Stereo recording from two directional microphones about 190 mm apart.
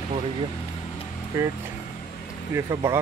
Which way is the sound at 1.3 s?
15° right (ahead or behind).